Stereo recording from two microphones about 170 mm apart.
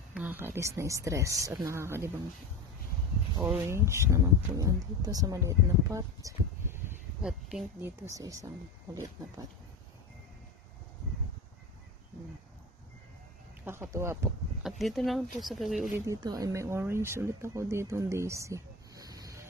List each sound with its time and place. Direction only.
0.1 s speech: 10° right (ahead or behind)
3.4 s speech: 10° right (ahead or behind)
7.8 s speech: 15° right (ahead or behind)
13.7 s speech: 15° right (ahead or behind)
14.6 s speech: centre (ahead or behind)
15.9 s speech: 20° right (ahead or behind)